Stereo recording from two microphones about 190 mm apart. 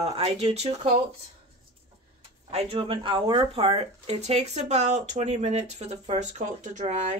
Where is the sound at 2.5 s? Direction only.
30° right (ahead or behind).